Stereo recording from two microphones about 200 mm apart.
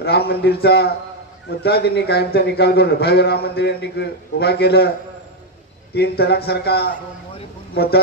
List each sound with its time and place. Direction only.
0.0 s a man's voice: 50° left (ahead or behind)
5.9 s a man's voice: 55° left (ahead or behind)